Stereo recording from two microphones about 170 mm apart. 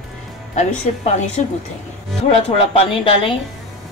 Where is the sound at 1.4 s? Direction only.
45° left (ahead or behind).